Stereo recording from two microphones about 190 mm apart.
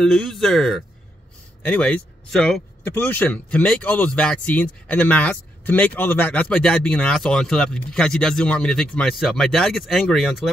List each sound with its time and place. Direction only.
0.0 s speech: centre (ahead or behind)